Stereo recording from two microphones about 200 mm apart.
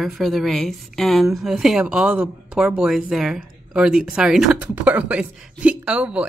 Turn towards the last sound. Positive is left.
turn(degrees=-5)  # may be behind; listen again after turning